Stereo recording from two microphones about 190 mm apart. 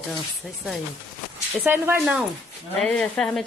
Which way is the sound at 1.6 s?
10° right (ahead or behind).